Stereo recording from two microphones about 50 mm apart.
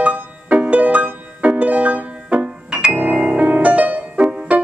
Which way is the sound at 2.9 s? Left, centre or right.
Right.